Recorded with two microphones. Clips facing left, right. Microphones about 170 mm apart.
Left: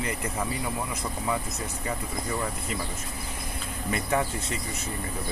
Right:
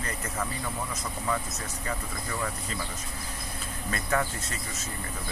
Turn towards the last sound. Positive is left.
turn(degrees=15)  # may be behind; listen again after turning